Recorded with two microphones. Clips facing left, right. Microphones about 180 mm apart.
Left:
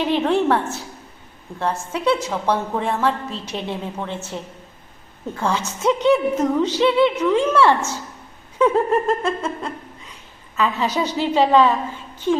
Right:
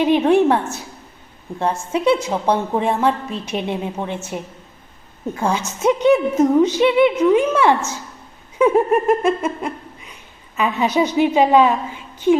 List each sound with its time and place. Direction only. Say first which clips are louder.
0.0 s a woman's voice: right 5 dB; 15° right (ahead or behind)
5.4 s a woman's voice: right 2 dB; 15° right (ahead or behind)